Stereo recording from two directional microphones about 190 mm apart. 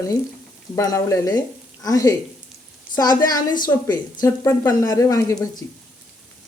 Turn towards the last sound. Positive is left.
turn(degrees=20)  # may be behind; listen again after turning